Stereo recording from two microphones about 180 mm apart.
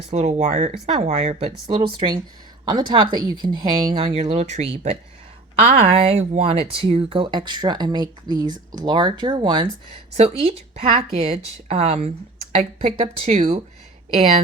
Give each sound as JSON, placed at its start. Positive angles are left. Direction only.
{"t": 0.1, "sound": "speech", "side_deg": -40}